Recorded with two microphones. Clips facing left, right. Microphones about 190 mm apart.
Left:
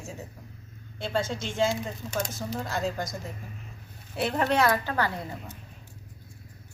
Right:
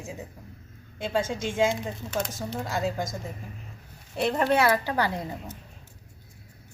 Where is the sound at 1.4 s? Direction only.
10° right (ahead or behind).